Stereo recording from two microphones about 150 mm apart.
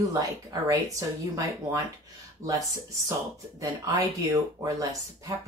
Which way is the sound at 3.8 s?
25° right (ahead or behind).